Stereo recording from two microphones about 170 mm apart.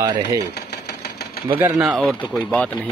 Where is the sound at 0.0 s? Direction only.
20° right (ahead or behind).